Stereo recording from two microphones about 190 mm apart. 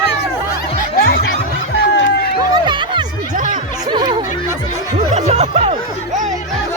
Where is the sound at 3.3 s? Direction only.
45° right (ahead or behind).